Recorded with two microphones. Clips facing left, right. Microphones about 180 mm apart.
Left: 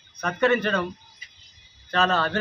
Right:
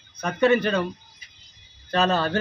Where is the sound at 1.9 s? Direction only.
35° right (ahead or behind).